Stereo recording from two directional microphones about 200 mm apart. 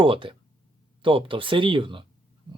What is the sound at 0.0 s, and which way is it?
Speech, 25° right (ahead or behind).